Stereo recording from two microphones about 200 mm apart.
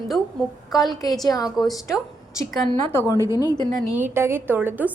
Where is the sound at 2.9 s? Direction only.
10° left (ahead or behind).